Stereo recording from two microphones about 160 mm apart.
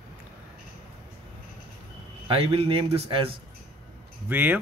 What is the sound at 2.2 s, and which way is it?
A man's voice, 35° right (ahead or behind).